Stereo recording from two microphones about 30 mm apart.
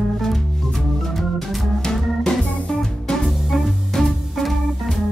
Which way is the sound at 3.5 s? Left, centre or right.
Centre.